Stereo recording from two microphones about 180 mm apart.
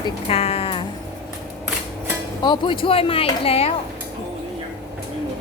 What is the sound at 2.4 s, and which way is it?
Speech, 25° left (ahead or behind).